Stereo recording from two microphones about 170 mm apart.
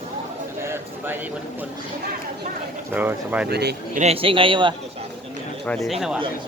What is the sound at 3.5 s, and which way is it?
Speech, 75° right (ahead or behind).